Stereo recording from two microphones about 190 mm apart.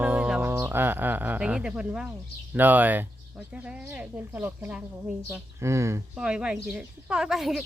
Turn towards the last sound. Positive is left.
turn(degrees=0)  # may be behind; listen again after turning